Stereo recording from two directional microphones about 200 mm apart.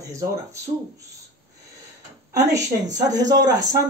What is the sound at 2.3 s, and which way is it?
Speech, 15° right (ahead or behind).